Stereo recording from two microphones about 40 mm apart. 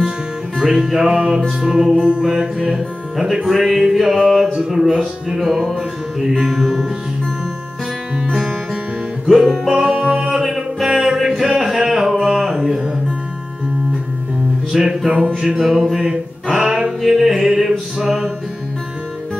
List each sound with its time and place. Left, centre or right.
0.6 s music: centre
2.0 s music: right; by 5.8 s centre
6.3 s music: right
9.2 s music: centre
10.4 s music: centre
14.7 s music: centre
15.0 s music: right
15.6 s music: centre
16.5 s music: right
17.0 s music: centre